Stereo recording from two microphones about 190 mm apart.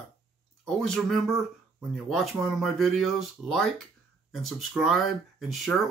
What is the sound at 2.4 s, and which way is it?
Speech, centre (ahead or behind).